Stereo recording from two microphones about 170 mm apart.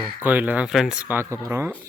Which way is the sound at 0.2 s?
10° right (ahead or behind).